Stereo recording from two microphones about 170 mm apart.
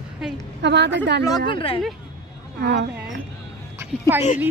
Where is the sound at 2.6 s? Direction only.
90° right.